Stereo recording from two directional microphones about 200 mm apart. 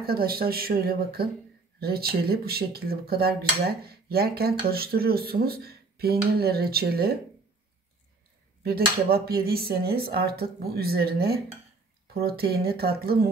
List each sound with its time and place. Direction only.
0.0 s dishes: 50° right (ahead or behind)
8.6 s dishes: 50° right (ahead or behind)